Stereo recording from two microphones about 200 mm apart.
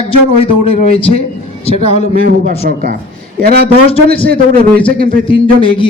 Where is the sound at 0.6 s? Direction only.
30° left (ahead or behind).